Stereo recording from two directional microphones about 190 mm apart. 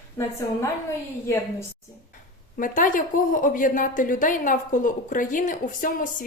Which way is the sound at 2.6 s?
45° left (ahead or behind).